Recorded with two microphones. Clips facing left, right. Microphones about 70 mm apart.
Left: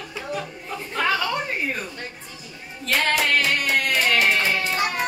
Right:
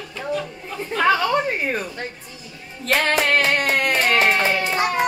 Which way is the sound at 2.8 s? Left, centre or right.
Right.